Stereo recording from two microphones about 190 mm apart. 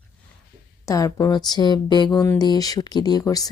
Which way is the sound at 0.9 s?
15° left (ahead or behind).